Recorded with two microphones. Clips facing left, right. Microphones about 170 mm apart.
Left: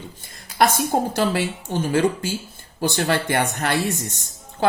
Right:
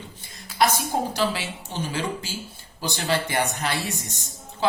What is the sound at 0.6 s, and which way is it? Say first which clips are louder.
A man's voice: left 4 dB; 50° left (ahead or behind).